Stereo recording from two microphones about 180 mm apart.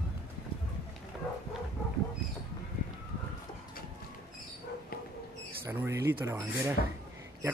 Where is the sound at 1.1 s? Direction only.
Centre (ahead or behind).